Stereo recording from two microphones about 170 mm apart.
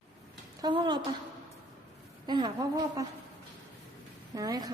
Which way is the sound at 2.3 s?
25° right (ahead or behind).